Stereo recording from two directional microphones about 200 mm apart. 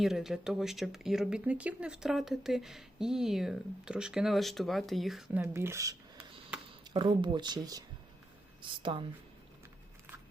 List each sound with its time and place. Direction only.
0.0 s speech: centre (ahead or behind); by 9.0 s 25° right (ahead or behind)